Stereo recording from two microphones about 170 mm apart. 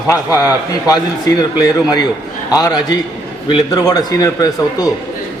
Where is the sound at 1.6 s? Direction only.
25° left (ahead or behind).